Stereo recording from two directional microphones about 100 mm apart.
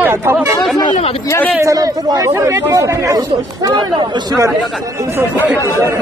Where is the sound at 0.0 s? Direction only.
20° right (ahead or behind).